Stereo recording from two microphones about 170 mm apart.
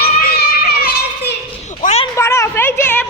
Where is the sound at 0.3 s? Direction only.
65° left (ahead or behind).